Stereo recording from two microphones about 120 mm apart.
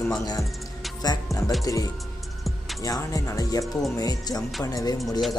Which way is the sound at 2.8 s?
30° left (ahead or behind).